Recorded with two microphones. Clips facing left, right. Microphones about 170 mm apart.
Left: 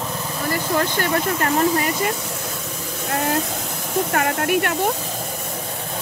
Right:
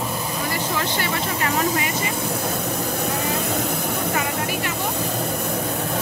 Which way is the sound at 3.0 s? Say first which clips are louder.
Left 7 dB; 65° left (ahead or behind).